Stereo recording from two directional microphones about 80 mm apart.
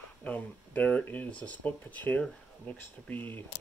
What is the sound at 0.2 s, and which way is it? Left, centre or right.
Speech, centre.